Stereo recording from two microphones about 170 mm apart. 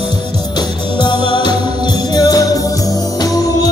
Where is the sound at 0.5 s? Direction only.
25° left (ahead or behind).